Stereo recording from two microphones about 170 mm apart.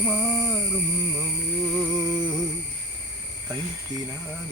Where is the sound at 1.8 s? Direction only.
10° right (ahead or behind).